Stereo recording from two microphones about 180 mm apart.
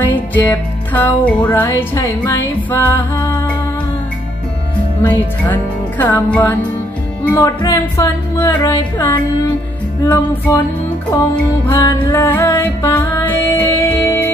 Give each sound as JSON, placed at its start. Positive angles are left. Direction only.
{"t": 0.0, "sound": "music", "side_deg": 10}
{"t": 5.5, "sound": "music", "side_deg": 10}
{"t": 11.6, "sound": "music", "side_deg": 15}